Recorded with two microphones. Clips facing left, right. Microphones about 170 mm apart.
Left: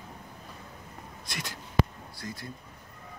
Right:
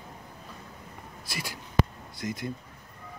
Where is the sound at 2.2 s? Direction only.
20° right (ahead or behind).